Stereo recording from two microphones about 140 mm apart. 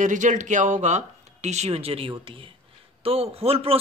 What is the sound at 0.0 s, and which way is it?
A man's voice, 65° right (ahead or behind).